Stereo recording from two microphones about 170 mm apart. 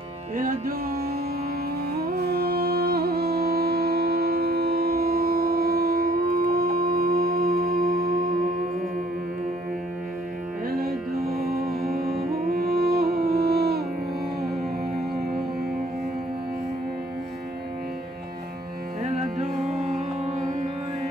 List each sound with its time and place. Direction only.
0.4 s music: 55° right (ahead or behind)
10.7 s music: 60° right (ahead or behind)
19.6 s music: centre (ahead or behind)